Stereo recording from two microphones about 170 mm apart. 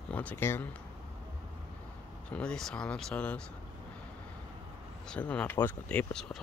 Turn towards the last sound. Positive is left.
turn(degrees=5)  # may be behind; listen again after turning